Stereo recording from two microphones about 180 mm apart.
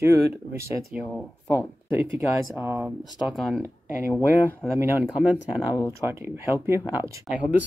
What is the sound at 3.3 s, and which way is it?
Speech, centre (ahead or behind).